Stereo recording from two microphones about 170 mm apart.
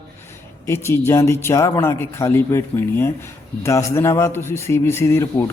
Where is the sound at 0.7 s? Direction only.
15° left (ahead or behind).